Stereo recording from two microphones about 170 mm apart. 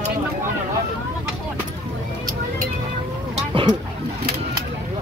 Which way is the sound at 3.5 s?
25° right (ahead or behind).